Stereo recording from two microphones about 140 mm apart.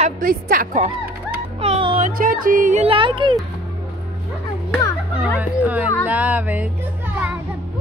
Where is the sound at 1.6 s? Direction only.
40° right (ahead or behind).